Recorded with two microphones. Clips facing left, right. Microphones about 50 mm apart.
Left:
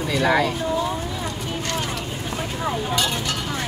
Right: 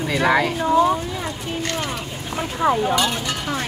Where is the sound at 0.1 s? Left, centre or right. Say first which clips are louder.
Right 1 dB; centre.